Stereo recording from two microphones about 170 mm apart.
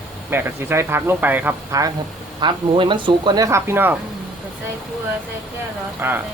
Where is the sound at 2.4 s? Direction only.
30° right (ahead or behind); by 3.9 s 15° right (ahead or behind).